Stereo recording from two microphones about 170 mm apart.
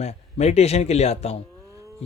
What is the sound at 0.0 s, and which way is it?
A man's voice, 40° left (ahead or behind).